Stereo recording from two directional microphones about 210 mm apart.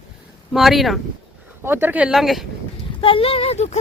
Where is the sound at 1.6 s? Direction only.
10° right (ahead or behind).